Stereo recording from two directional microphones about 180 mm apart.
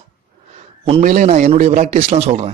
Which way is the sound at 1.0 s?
45° right (ahead or behind).